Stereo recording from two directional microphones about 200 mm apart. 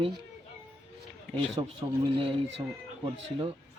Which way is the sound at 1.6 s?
20° right (ahead or behind).